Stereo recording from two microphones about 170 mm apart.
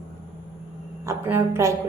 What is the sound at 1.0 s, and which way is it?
Speech, 15° right (ahead or behind).